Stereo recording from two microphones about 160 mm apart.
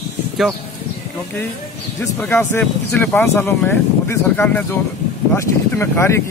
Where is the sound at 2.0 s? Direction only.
15° left (ahead or behind).